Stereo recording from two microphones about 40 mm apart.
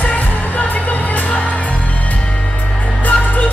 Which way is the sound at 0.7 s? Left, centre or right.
Left.